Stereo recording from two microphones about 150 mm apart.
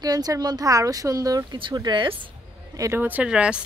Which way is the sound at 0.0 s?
25° right (ahead or behind).